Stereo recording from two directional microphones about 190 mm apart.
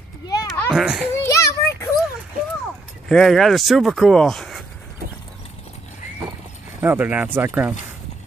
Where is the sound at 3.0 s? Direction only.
Centre (ahead or behind).